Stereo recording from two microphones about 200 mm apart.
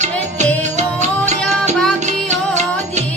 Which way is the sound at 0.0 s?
35° right (ahead or behind).